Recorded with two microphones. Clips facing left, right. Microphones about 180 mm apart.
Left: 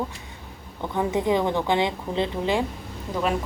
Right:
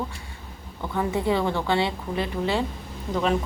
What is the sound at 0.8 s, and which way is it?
Speech, 20° left (ahead or behind).